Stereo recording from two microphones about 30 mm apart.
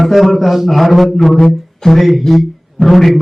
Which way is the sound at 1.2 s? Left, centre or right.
Centre.